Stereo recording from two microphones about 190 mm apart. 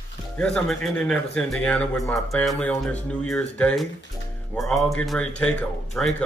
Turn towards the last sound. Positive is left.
turn(degrees=5)  # may be behind; listen again after turning